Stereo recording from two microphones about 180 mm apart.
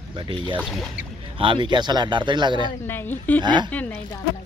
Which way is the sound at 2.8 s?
10° left (ahead or behind).